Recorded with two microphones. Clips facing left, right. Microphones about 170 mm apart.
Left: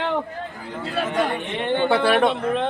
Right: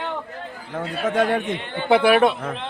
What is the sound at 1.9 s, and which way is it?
Speech, 10° right (ahead or behind).